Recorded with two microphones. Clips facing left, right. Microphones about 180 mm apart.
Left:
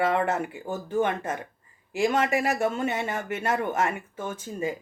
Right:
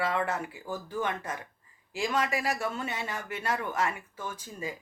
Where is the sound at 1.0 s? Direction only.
50° left (ahead or behind).